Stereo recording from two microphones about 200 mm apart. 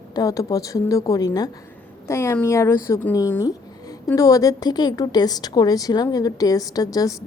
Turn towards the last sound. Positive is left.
turn(degrees=15)  # may be behind; listen again after turning